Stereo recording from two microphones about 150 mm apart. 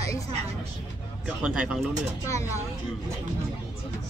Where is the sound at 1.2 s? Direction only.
5° right (ahead or behind).